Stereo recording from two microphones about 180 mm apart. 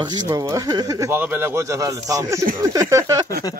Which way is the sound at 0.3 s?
20° right (ahead or behind).